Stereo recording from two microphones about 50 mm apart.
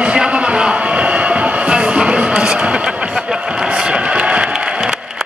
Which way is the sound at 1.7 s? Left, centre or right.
Centre.